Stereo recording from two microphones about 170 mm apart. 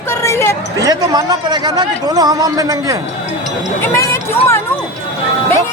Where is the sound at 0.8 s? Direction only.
20° right (ahead or behind).